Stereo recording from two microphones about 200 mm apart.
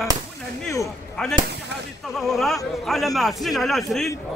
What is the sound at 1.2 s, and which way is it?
Speech, 5° left (ahead or behind).